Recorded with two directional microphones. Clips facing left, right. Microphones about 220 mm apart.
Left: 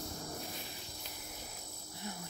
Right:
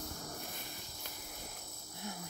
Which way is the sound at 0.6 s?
50° right (ahead or behind).